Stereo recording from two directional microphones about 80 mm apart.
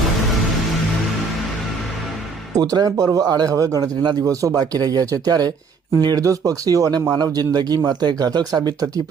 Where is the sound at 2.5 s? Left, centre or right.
Right.